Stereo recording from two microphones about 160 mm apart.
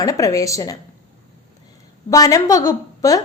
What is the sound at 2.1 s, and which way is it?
A woman's voice, 20° left (ahead or behind).